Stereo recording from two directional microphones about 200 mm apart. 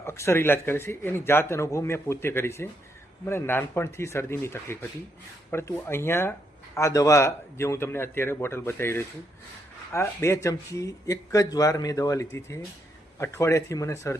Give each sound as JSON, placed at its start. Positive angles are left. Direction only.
{"t": 0.0, "sound": "speech", "side_deg": 15}